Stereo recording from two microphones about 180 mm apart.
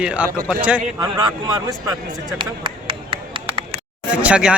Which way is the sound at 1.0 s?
20° right (ahead or behind).